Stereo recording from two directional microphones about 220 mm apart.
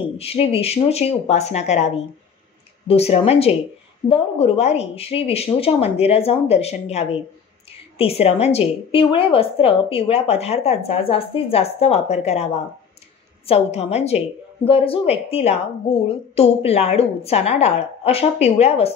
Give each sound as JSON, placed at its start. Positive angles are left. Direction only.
{"t": 0.2, "sound": "a woman's voice", "side_deg": 25}
{"t": 2.9, "sound": "a woman's voice", "side_deg": 30}
{"t": 13.5, "sound": "a woman's voice", "side_deg": 30}